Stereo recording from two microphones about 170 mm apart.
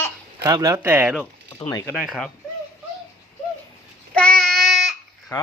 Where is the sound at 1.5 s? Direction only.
20° left (ahead or behind).